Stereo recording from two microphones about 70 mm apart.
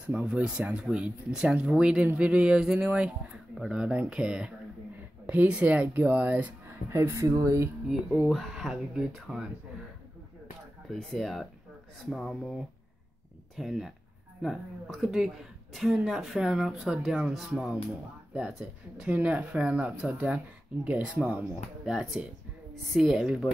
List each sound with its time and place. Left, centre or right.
0.0 s speech: centre
6.9 s speech: right
8.1 s speech: centre
10.9 s speech: centre
13.6 s speech: centre
21.8 s speech: centre